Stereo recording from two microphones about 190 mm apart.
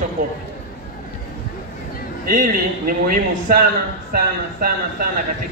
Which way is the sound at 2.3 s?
45° right (ahead or behind).